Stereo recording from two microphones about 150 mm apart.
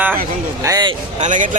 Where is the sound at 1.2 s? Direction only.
60° right (ahead or behind).